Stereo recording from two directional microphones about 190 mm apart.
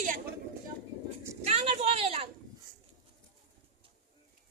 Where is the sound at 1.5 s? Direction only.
35° right (ahead or behind).